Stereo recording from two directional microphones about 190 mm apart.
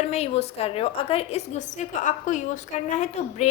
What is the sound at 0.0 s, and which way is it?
A woman's voice, 35° left (ahead or behind).